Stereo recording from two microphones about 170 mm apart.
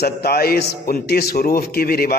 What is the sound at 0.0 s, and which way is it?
A man's voice, 65° left (ahead or behind).